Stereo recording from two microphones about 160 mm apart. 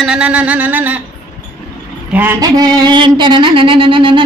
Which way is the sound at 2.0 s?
10° right (ahead or behind).